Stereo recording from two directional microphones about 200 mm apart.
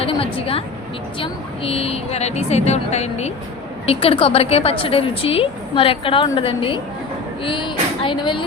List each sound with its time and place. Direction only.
0.0 s a woman's voice: 30° left (ahead or behind)